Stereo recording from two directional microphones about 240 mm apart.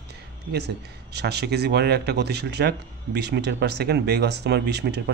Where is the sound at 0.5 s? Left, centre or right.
Right.